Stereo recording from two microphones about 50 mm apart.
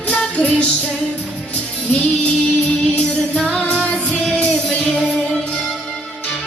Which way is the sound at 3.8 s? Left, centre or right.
Left.